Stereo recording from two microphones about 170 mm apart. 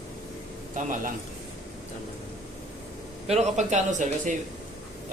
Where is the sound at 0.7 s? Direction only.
50° right (ahead or behind).